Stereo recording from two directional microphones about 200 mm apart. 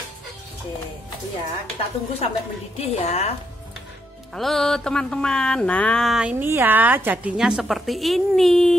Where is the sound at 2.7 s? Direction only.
30° left (ahead or behind).